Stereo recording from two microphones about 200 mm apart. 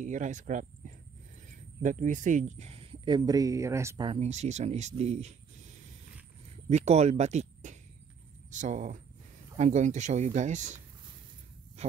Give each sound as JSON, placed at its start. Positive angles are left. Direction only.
{"t": 0.0, "sound": "speech", "side_deg": -40}
{"t": 4.1, "sound": "speech", "side_deg": -35}
{"t": 6.7, "sound": "speech", "side_deg": -35}